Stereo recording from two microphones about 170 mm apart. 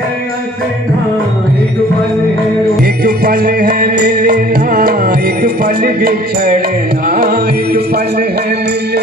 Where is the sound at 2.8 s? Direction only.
65° right (ahead or behind).